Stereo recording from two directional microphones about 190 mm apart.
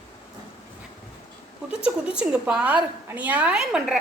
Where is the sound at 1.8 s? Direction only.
5° right (ahead or behind).